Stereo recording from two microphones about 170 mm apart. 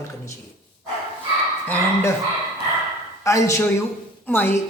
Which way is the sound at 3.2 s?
15° left (ahead or behind).